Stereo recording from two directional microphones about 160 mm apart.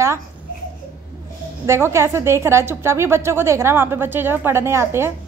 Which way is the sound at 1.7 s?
15° right (ahead or behind).